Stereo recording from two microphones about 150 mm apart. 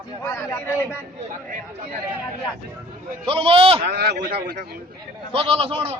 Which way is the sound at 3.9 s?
90° right.